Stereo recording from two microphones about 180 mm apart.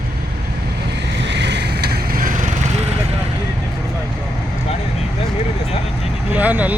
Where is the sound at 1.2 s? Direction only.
70° right (ahead or behind); by 2.5 s 50° right (ahead or behind).